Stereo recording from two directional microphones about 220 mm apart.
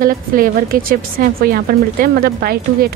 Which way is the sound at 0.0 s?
40° right (ahead or behind).